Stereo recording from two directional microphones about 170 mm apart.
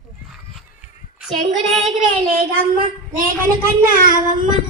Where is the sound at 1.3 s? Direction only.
40° right (ahead or behind).